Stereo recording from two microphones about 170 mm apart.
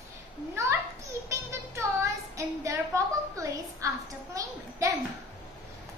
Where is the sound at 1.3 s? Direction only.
15° right (ahead or behind).